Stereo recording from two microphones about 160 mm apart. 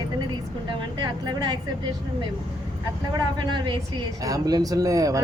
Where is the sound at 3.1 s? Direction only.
30° right (ahead or behind).